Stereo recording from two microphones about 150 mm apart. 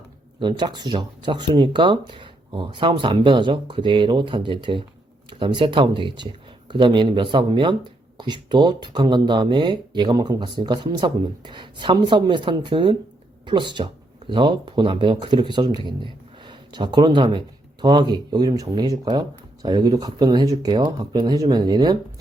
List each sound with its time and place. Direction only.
0.3 s speech: 30° right (ahead or behind)